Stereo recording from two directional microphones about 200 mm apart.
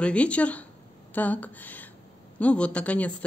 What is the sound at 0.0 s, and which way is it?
Speech, 5° left (ahead or behind).